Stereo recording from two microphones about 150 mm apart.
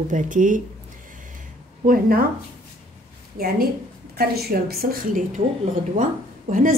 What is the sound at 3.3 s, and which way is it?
A woman's voice, 80° right.